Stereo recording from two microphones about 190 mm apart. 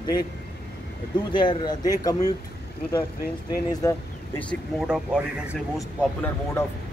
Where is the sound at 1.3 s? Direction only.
25° left (ahead or behind).